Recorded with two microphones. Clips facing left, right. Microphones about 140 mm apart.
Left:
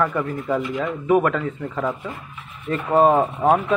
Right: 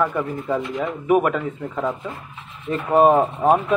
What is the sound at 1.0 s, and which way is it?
A man's voice, 10° right (ahead or behind).